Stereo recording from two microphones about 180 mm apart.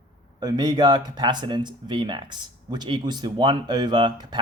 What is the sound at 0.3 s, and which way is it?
Speech, 20° right (ahead or behind).